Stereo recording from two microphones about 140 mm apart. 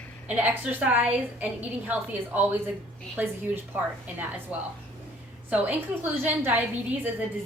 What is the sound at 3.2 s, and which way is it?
A woman's voice, 15° right (ahead or behind).